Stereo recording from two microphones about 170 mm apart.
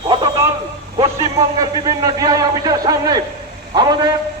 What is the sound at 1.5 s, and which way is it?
A man's voice, 20° right (ahead or behind).